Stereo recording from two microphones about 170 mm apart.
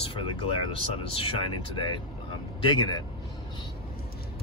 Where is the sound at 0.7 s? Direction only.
30° left (ahead or behind).